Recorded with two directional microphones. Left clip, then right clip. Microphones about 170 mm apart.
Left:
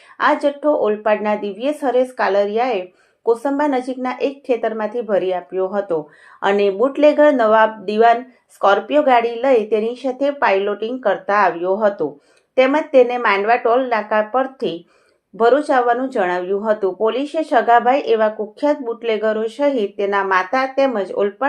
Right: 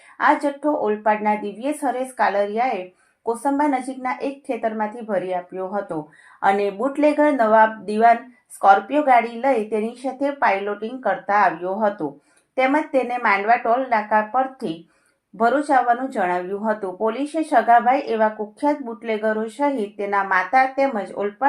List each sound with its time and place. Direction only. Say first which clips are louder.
0.2 s speech: left 2 dB; 25° left (ahead or behind)